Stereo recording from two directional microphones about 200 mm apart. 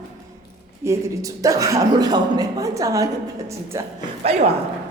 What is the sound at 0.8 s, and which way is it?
A man's voice, 15° right (ahead or behind).